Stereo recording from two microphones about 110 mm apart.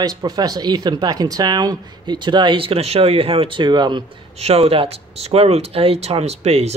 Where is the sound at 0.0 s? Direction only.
35° right (ahead or behind).